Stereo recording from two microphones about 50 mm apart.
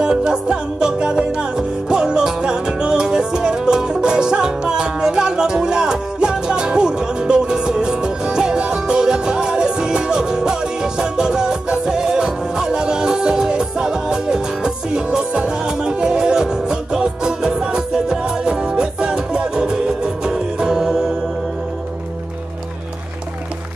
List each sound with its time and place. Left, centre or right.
0.0 s music: centre